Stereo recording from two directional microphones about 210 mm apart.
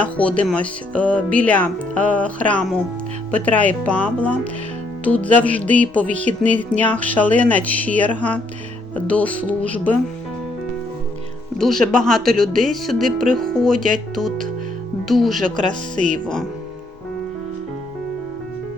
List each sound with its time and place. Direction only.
0.0 s music: 5° left (ahead or behind)
3.3 s music: 5° left (ahead or behind)
11.5 s speech: centre (ahead or behind)
15.0 s speech: centre (ahead or behind)
15.4 s speech: 35° right (ahead or behind)
16.2 s speech: 5° left (ahead or behind)